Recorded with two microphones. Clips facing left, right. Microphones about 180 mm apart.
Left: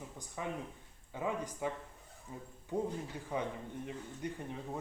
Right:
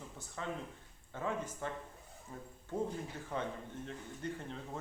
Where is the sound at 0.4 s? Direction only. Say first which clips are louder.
Left 1 dB; 15° left (ahead or behind).